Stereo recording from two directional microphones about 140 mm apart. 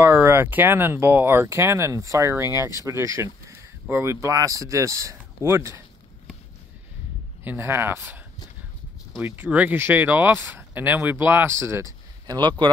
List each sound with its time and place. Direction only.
0.0 s speech: 15° right (ahead or behind)
7.4 s speech: 15° right (ahead or behind)
9.2 s speech: 15° right (ahead or behind); by 12.7 s 30° right (ahead or behind)